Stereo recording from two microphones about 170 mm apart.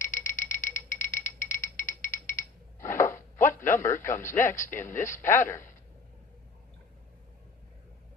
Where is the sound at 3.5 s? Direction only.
15° left (ahead or behind).